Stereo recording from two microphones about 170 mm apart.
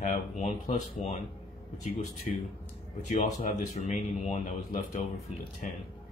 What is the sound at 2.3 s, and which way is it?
Speech, 45° left (ahead or behind).